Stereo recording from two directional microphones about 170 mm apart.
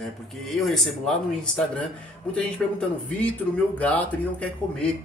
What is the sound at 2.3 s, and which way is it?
A man's voice, 5° left (ahead or behind).